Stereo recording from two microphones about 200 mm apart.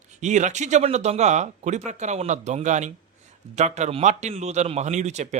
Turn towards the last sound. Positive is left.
turn(degrees=-35)  # may be behind; listen again after turning